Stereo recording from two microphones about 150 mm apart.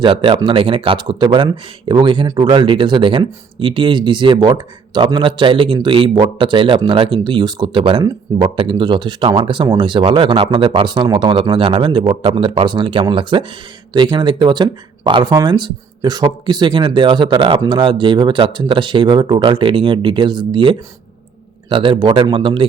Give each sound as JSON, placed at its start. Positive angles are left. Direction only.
{"t": 0.0, "sound": "speech", "side_deg": -35}